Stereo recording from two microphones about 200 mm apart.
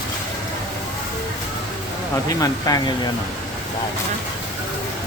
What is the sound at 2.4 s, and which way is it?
Speech, 20° left (ahead or behind).